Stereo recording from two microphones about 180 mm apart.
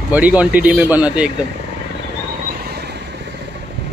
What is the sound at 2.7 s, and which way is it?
Vehicle, 65° right (ahead or behind).